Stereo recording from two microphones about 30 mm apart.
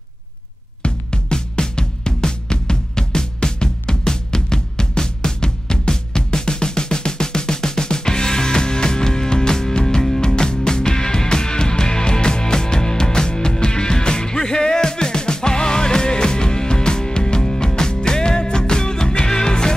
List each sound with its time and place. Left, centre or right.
0.8 s music: left